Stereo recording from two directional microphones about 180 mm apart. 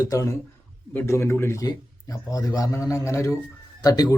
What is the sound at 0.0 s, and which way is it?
A man's voice, 20° left (ahead or behind).